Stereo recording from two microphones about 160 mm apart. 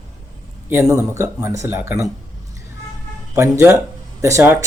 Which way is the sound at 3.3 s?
15° right (ahead or behind).